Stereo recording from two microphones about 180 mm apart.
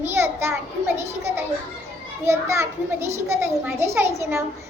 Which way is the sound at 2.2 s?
15° right (ahead or behind).